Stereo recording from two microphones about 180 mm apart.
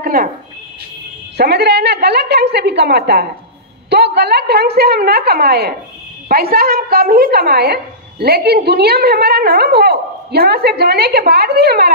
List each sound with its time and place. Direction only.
0.0 s a woman's voice: 55° right (ahead or behind)
1.3 s a woman's voice: 65° right (ahead or behind)